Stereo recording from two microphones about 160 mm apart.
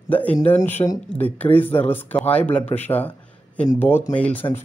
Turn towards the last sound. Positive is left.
turn(degrees=10)  # may be behind; listen again after turning